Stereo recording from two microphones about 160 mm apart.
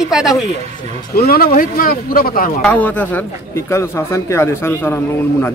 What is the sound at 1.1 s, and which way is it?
Speech, 70° left (ahead or behind).